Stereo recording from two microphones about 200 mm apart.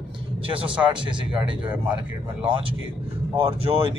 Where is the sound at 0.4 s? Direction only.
25° right (ahead or behind).